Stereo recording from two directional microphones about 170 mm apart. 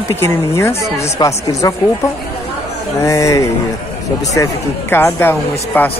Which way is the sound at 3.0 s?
20° left (ahead or behind).